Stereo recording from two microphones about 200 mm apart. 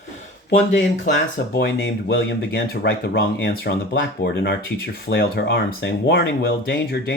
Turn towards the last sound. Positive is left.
turn(degrees=55)  # may be behind; listen again after turning